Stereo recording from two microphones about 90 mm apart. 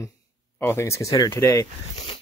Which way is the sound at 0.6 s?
35° left (ahead or behind).